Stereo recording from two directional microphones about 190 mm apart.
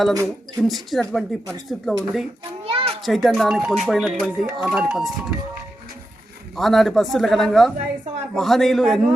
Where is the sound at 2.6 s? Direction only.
30° right (ahead or behind).